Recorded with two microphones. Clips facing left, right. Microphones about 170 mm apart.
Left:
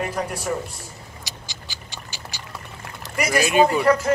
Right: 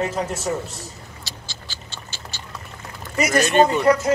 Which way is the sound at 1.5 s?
15° left (ahead or behind).